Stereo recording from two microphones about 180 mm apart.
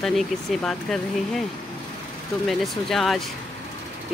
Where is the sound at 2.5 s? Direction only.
Centre (ahead or behind).